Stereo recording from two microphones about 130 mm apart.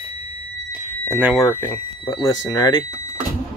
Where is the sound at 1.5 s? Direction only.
25° left (ahead or behind).